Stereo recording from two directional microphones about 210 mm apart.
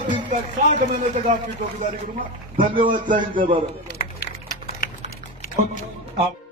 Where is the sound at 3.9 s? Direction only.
50° left (ahead or behind).